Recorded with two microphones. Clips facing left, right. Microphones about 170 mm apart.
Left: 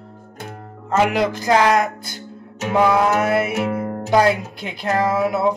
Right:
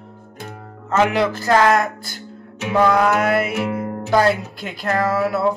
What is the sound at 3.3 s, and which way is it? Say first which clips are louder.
Music: even; centre (ahead or behind).